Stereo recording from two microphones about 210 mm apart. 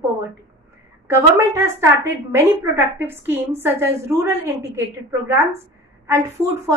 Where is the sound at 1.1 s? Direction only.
10° right (ahead or behind).